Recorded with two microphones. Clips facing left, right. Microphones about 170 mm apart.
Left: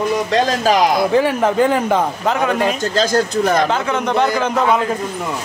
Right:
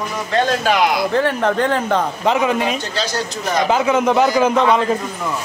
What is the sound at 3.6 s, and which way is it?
Speech, 10° right (ahead or behind).